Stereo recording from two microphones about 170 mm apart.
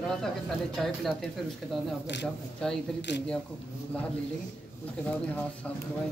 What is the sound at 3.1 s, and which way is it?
Speech, 90° left.